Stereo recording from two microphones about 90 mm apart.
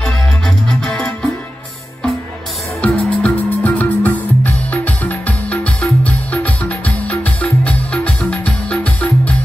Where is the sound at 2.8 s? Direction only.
15° left (ahead or behind).